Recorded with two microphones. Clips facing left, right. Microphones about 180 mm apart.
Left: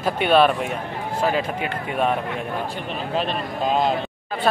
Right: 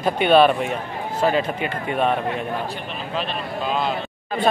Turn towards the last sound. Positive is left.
turn(degrees=40)  # may be behind; listen again after turning